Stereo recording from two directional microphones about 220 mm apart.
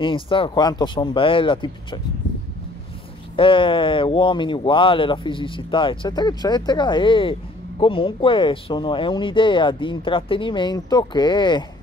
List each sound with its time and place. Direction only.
0.0 s speech: 25° left (ahead or behind)
3.3 s speech: 25° left (ahead or behind)